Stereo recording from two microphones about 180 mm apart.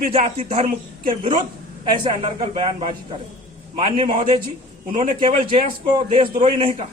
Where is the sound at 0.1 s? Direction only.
35° right (ahead or behind).